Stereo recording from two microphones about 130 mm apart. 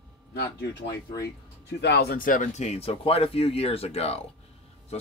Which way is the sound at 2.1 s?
90° left.